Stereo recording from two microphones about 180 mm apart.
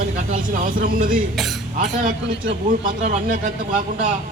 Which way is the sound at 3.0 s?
50° right (ahead or behind).